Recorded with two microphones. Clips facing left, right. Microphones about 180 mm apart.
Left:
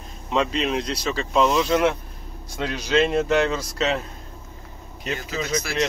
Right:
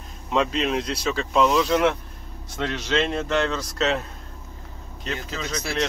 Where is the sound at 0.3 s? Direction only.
Centre (ahead or behind).